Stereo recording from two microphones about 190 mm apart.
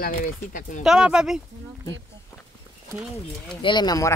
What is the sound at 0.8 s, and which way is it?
Speech, 5° right (ahead or behind).